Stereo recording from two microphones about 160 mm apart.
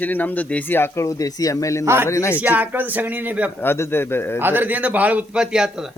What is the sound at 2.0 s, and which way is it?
Speech, 20° left (ahead or behind).